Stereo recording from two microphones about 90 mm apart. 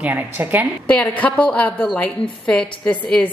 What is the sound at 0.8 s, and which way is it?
A woman's voice, 15° left (ahead or behind).